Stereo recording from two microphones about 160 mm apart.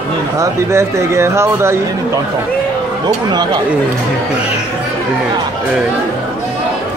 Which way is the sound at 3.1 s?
25° right (ahead or behind).